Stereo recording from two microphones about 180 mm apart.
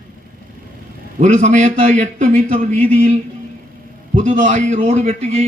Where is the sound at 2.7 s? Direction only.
10° left (ahead or behind).